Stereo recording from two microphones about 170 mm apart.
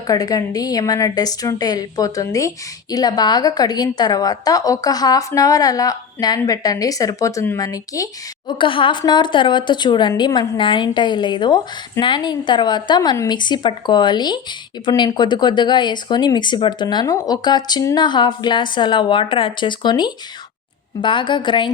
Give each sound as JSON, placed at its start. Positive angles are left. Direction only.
{"t": 0.1, "sound": "a woman's voice", "side_deg": 20}